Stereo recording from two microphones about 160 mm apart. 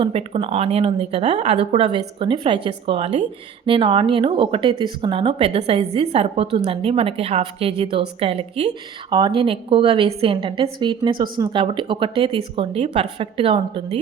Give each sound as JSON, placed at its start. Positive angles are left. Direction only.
{"t": 0.0, "sound": "speech", "side_deg": -35}
{"t": 1.5, "sound": "speech", "side_deg": -35}